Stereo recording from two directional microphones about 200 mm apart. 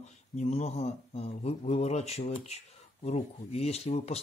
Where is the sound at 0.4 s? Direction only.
35° left (ahead or behind).